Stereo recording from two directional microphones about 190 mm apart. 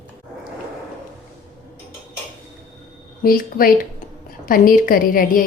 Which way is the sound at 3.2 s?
50° left (ahead or behind).